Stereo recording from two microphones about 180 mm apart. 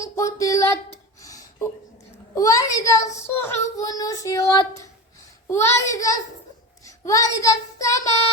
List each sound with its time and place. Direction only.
0.0 s a sound: 15° left (ahead or behind)
2.3 s child singing: 20° left (ahead or behind)
5.9 s a child's voice: 20° left (ahead or behind)
6.8 s child singing: 20° left (ahead or behind)